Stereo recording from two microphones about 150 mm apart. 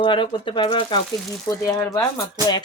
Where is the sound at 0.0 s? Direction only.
35° left (ahead or behind).